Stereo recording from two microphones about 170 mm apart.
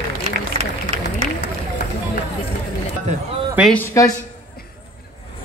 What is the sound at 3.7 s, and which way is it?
Speech, 20° left (ahead or behind).